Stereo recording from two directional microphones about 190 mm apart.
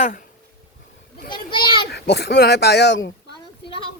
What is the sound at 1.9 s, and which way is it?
Speech, 60° left (ahead or behind).